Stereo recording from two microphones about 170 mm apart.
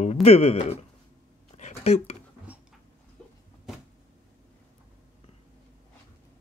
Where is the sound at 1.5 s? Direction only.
40° left (ahead or behind).